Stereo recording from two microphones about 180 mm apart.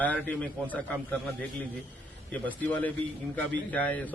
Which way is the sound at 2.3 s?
10° left (ahead or behind).